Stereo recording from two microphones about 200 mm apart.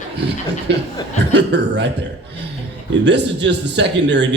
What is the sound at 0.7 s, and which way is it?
Speech, 60° right (ahead or behind).